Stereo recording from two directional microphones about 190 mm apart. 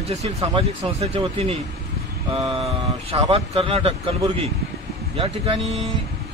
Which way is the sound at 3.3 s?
30° right (ahead or behind).